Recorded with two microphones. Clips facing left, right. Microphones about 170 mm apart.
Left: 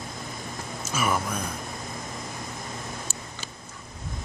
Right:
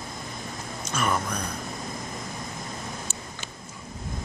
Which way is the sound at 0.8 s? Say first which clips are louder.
Even; 5° left (ahead or behind).